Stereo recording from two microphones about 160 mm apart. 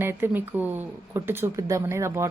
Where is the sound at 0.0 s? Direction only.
10° right (ahead or behind).